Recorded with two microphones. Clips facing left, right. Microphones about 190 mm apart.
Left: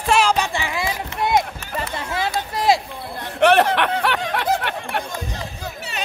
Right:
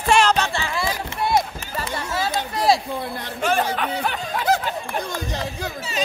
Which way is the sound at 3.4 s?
70° left (ahead or behind).